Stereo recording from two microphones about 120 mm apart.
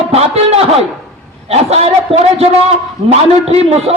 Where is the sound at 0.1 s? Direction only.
60° right (ahead or behind).